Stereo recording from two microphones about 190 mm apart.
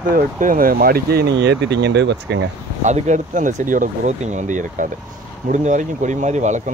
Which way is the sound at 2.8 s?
40° right (ahead or behind).